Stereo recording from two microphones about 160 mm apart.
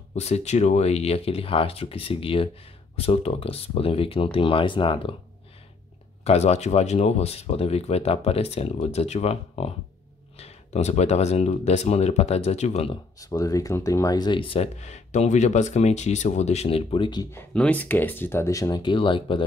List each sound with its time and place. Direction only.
0.1 s speech: 40° left (ahead or behind)
6.2 s speech: 45° left (ahead or behind)
13.2 s speech: 20° left (ahead or behind)